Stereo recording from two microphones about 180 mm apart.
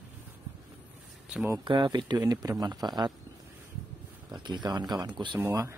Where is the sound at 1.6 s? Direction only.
25° right (ahead or behind).